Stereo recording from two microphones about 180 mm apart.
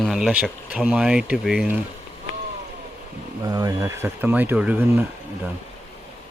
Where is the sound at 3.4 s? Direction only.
20° right (ahead or behind).